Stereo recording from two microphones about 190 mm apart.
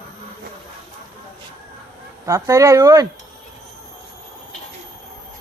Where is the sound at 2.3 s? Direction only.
15° right (ahead or behind).